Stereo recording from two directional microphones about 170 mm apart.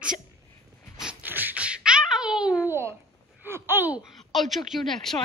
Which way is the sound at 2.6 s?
15° right (ahead or behind).